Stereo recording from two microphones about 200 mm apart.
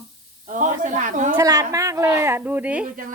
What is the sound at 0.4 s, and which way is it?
Speech, 40° right (ahead or behind).